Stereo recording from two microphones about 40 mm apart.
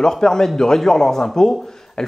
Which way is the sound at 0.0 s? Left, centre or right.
Centre.